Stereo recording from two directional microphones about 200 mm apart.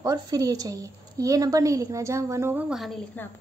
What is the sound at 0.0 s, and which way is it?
A woman's voice, 20° right (ahead or behind).